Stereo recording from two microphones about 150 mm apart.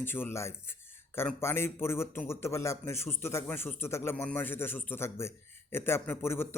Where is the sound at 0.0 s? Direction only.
15° left (ahead or behind).